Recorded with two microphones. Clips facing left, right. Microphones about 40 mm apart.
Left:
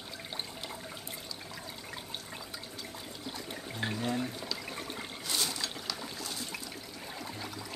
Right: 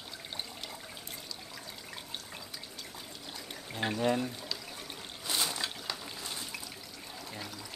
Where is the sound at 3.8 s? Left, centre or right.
Centre.